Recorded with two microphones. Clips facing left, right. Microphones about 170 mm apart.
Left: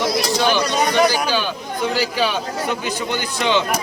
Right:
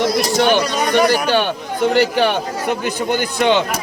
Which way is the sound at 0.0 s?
55° right (ahead or behind).